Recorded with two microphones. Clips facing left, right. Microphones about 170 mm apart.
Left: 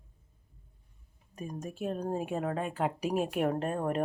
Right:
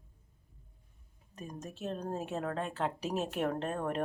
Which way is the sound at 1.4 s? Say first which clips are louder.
Left 5 dB; 10° left (ahead or behind).